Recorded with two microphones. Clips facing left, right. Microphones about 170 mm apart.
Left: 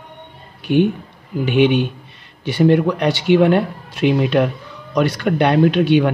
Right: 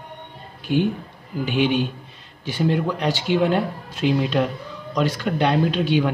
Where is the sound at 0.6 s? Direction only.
65° left (ahead or behind).